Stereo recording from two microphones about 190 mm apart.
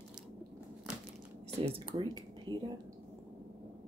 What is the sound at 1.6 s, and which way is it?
Speech, 30° right (ahead or behind).